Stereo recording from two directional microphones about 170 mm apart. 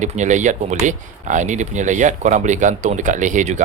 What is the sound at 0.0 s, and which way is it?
Speech, 45° right (ahead or behind).